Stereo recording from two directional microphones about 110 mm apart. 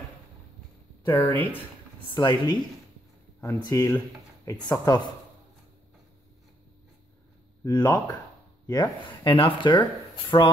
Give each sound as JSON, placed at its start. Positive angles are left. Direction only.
{"t": 1.0, "sound": "speech", "side_deg": 20}
{"t": 2.1, "sound": "speech", "side_deg": 40}
{"t": 3.6, "sound": "speech", "side_deg": 35}
{"t": 7.6, "sound": "speech", "side_deg": 35}
{"t": 9.2, "sound": "speech", "side_deg": 50}